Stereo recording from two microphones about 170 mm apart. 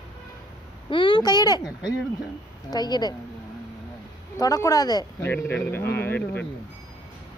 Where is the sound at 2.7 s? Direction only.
25° left (ahead or behind).